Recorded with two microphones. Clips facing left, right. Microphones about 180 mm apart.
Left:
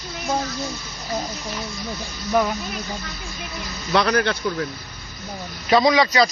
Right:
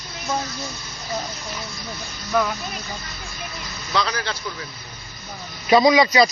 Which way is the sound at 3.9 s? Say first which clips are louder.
Left 6 dB; 60° left (ahead or behind).